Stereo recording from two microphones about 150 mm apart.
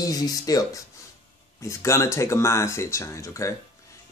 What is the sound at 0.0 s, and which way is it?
Speech, 25° left (ahead or behind).